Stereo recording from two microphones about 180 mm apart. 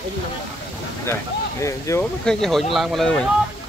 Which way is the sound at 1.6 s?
15° left (ahead or behind).